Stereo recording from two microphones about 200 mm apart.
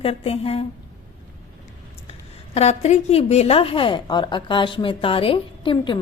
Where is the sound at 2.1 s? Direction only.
30° left (ahead or behind).